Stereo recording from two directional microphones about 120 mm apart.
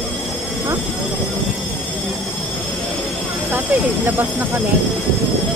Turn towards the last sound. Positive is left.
turn(degrees=-15)  # may be behind; listen again after turning